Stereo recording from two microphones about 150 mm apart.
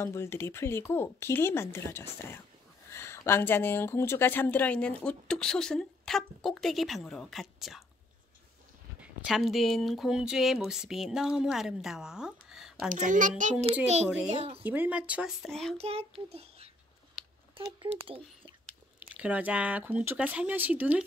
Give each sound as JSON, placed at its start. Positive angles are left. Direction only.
{"t": 0.0, "sound": "speech", "side_deg": 15}
{"t": 9.0, "sound": "speech", "side_deg": -5}
{"t": 12.9, "sound": "a child's voice", "side_deg": -60}
{"t": 13.4, "sound": "a child's voice", "side_deg": -50}
{"t": 14.6, "sound": "speech", "side_deg": -10}
{"t": 15.8, "sound": "a child's voice", "side_deg": -45}
{"t": 18.0, "sound": "speech", "side_deg": -35}
{"t": 18.9, "sound": "speech", "side_deg": -10}